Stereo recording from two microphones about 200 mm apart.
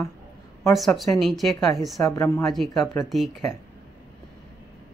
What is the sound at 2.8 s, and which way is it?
Speech, 15° left (ahead or behind).